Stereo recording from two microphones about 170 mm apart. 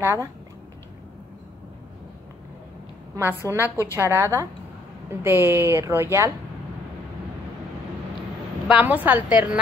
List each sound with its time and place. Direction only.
0.0 s a woman's voice: 15° right (ahead or behind)
3.2 s a woman's voice: 10° right (ahead or behind)
8.6 s a woman's voice: 10° right (ahead or behind)